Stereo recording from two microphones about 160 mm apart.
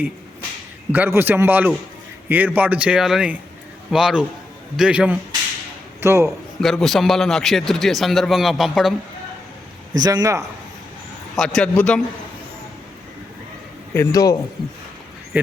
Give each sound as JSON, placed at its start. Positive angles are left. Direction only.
{"t": 0.9, "sound": "a man's voice", "side_deg": -10}
{"t": 6.6, "sound": "a man's voice", "side_deg": 0}
{"t": 9.9, "sound": "speech", "side_deg": -25}
{"t": 11.3, "sound": "a man's voice", "side_deg": 5}
{"t": 13.9, "sound": "a man's voice", "side_deg": 20}